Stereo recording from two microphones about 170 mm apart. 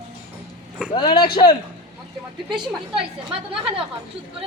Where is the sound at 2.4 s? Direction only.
30° right (ahead or behind).